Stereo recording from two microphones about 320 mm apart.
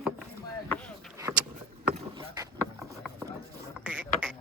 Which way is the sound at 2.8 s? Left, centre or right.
Centre.